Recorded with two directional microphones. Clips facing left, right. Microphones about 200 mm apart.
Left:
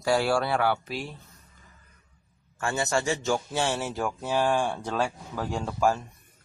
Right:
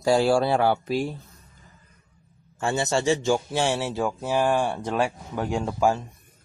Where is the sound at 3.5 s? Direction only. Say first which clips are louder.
Right 3 dB; 10° right (ahead or behind).